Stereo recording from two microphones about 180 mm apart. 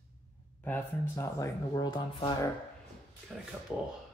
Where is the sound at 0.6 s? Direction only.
10° left (ahead or behind).